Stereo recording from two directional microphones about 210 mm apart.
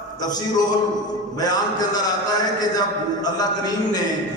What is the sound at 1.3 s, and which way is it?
A man's voice, 20° left (ahead or behind).